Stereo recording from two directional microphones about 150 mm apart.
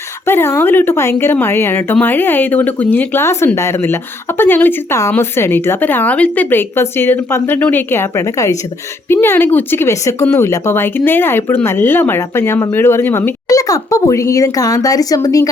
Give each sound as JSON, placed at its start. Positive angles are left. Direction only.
{"t": 0.3, "sound": "speech", "side_deg": 15}